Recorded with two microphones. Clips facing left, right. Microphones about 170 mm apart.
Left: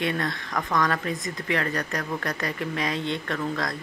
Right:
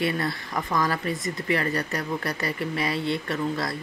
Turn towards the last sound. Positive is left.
turn(degrees=-5)  # may be behind; listen again after turning